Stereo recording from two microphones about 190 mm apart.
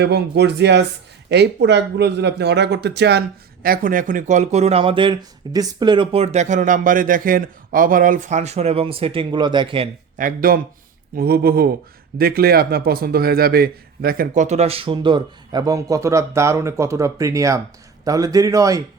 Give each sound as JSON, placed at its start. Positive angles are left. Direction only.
{"t": 0.0, "sound": "a man's voice", "side_deg": -65}
{"t": 10.2, "sound": "a man's voice", "side_deg": -45}